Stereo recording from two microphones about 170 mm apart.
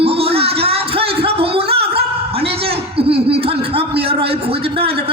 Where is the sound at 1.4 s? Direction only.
35° right (ahead or behind).